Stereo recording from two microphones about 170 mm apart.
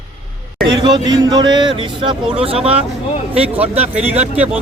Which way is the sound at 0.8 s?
25° right (ahead or behind).